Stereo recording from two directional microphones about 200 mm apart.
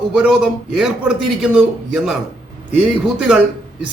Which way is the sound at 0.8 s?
5° right (ahead or behind).